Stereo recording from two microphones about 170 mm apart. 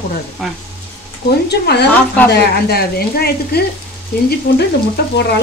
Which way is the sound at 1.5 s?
75° left (ahead or behind).